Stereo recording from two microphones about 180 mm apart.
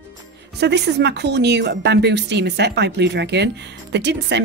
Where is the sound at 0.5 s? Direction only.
70° right (ahead or behind).